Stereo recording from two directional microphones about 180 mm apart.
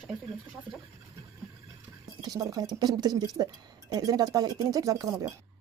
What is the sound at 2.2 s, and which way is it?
Speech, 20° right (ahead or behind).